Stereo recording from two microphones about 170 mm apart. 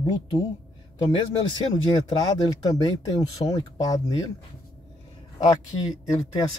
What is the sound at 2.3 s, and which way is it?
Speech, 25° left (ahead or behind).